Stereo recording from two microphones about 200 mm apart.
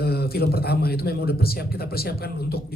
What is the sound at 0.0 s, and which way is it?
A man's voice, 50° left (ahead or behind).